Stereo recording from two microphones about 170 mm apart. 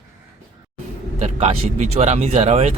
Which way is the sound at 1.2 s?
35° right (ahead or behind).